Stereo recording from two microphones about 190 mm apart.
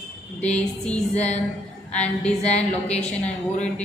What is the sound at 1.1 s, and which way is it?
Speech, 35° left (ahead or behind).